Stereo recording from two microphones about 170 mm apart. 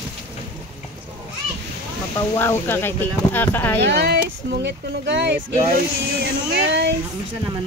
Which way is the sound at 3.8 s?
70° right (ahead or behind).